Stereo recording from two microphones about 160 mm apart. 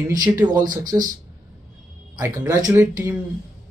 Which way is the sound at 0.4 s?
25° right (ahead or behind).